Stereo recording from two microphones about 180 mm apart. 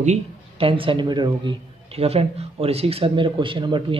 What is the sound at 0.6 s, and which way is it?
Speech, 30° right (ahead or behind).